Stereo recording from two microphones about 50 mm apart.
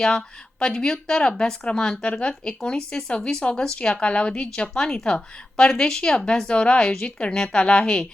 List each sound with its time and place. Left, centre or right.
0.2 s a woman's voice: centre